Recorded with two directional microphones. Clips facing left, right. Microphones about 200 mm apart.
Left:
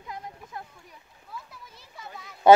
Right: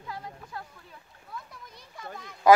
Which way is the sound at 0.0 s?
20° left (ahead or behind).